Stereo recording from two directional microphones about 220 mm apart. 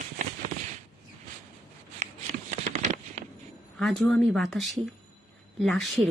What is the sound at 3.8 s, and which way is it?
Speech, centre (ahead or behind).